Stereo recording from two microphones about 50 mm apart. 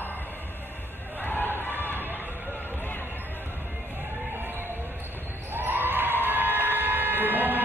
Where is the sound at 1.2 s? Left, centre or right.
Left.